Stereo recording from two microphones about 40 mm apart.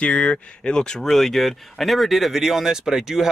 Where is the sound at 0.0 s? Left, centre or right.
Left.